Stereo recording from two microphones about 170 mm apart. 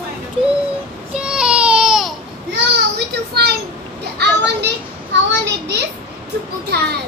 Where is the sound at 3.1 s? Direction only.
70° right (ahead or behind).